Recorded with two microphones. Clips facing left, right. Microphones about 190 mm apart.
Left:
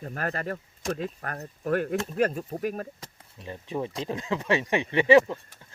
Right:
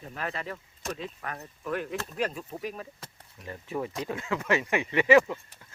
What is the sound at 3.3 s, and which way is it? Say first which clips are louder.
Speech: left 2 dB; 20° left (ahead or behind).